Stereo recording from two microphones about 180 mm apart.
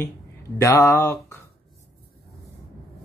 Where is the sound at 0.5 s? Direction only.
15° left (ahead or behind).